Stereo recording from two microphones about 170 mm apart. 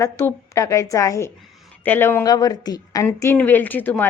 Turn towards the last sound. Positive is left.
turn(degrees=10)  # may be behind; listen again after turning